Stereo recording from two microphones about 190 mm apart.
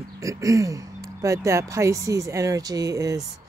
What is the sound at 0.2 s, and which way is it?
Speech, 15° right (ahead or behind).